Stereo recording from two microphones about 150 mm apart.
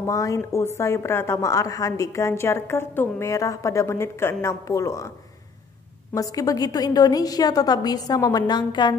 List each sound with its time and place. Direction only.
0.0 s a woman's voice: 20° left (ahead or behind)
6.1 s a woman's voice: 25° left (ahead or behind)